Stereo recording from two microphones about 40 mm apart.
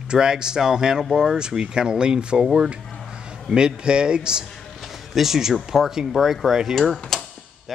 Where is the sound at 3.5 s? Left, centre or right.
Centre.